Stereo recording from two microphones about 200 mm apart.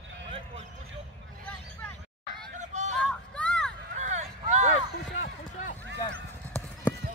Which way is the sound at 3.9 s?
35° right (ahead or behind).